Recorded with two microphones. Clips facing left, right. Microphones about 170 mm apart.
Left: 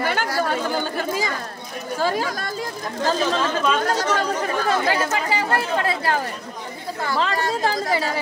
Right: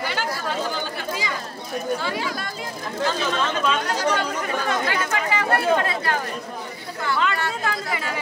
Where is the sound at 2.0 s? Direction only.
45° left (ahead or behind).